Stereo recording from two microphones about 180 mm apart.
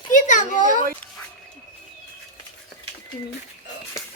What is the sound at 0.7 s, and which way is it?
Speech, 50° right (ahead or behind).